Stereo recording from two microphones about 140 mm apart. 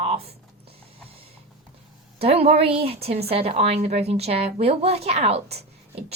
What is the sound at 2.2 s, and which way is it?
A woman's voice, 45° right (ahead or behind).